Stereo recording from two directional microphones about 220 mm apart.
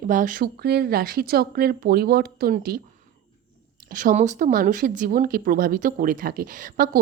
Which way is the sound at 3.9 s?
40° right (ahead or behind).